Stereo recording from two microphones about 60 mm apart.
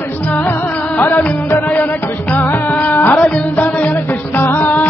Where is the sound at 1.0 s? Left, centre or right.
Left.